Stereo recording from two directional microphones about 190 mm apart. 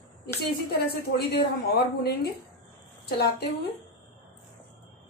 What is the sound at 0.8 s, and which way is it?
A woman's voice, 55° left (ahead or behind).